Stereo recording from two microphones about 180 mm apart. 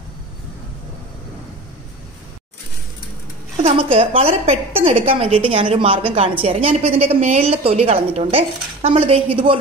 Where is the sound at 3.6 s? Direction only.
35° right (ahead or behind).